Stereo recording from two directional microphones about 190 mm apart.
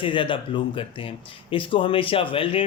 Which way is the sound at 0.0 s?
25° left (ahead or behind).